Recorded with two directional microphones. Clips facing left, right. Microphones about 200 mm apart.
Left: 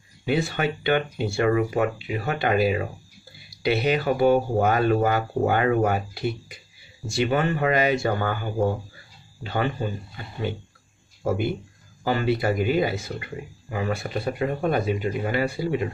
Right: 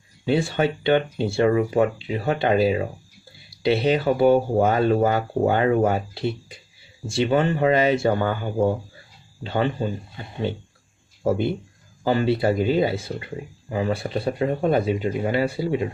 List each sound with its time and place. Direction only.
0.2 s speech: 30° right (ahead or behind)